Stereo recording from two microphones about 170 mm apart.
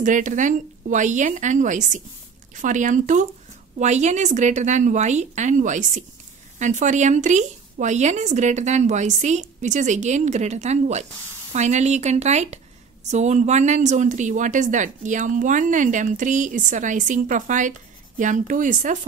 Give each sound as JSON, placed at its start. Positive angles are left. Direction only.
{"t": 0.0, "sound": "speech", "side_deg": -45}